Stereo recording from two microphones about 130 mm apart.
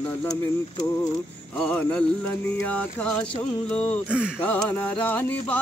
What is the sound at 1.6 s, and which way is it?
Speech, 10° left (ahead or behind).